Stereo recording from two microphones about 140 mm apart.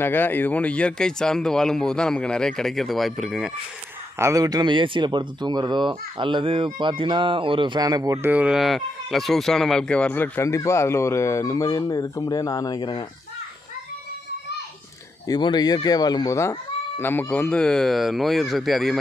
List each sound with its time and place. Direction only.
0.0 s speech: 15° left (ahead or behind); by 3.5 s centre (ahead or behind)
4.2 s speech: 25° right (ahead or behind)
8.3 s speech: 10° right (ahead or behind); by 13.0 s 30° left (ahead or behind)
15.2 s speech: 30° left (ahead or behind); by 18.9 s centre (ahead or behind)